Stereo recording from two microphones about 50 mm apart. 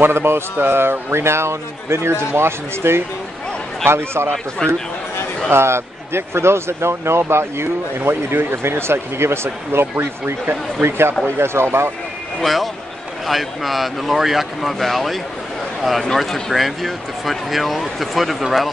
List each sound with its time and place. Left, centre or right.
0.0 s speech: right
4.6 s a man's voice: centre
5.5 s speech: right
12.4 s speech: centre
16.2 s speech: centre